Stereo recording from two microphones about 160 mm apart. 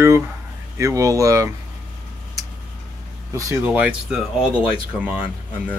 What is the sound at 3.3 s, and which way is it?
Speech, 10° right (ahead or behind).